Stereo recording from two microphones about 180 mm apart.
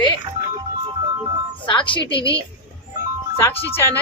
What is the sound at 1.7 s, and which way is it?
Speech, 25° left (ahead or behind).